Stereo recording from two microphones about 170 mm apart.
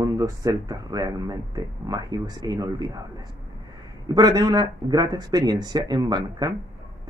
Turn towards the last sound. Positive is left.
turn(degrees=-25)  # may be behind; listen again after turning